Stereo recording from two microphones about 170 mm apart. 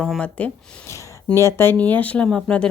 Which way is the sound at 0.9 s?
15° left (ahead or behind).